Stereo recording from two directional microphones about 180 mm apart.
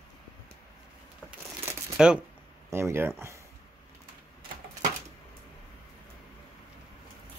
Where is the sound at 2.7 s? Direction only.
15° right (ahead or behind).